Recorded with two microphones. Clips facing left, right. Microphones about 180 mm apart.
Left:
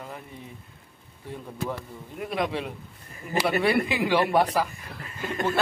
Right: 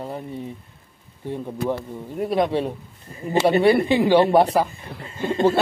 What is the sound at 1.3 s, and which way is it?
Speech, 30° right (ahead or behind).